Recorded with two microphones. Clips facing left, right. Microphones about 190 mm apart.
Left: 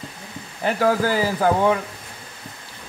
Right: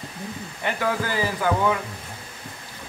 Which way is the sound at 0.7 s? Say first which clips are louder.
Left 6 dB; 35° left (ahead or behind).